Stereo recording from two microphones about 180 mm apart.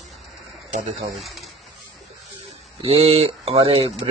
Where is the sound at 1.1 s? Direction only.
Centre (ahead or behind).